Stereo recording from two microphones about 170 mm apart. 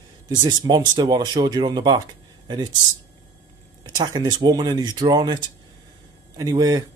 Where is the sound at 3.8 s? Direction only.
25° right (ahead or behind).